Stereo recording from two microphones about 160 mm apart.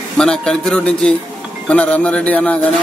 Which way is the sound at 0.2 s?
5° left (ahead or behind).